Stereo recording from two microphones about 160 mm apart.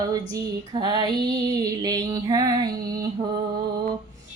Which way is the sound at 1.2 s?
25° right (ahead or behind).